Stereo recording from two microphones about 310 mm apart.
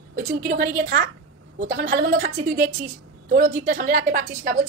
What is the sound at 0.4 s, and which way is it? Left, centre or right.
A woman's voice, right.